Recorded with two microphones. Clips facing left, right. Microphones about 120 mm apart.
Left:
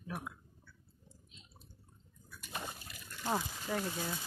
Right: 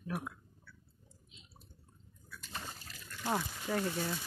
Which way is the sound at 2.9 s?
15° left (ahead or behind).